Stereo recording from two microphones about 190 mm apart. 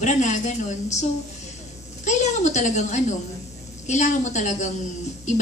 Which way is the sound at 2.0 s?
40° left (ahead or behind).